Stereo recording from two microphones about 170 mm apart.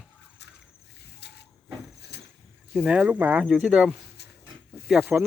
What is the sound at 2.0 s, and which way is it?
Vehicle, 75° left (ahead or behind).